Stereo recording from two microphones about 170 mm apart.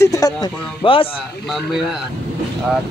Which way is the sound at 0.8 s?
30° left (ahead or behind).